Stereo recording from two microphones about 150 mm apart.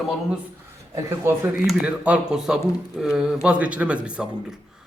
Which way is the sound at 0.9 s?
15° right (ahead or behind).